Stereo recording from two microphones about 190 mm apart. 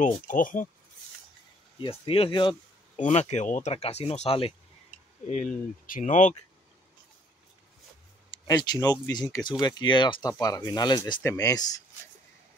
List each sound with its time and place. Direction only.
0.0 s speech: 45° left (ahead or behind)
1.8 s speech: 30° left (ahead or behind)
5.9 s speech: 40° left (ahead or behind)
8.5 s speech: 20° left (ahead or behind)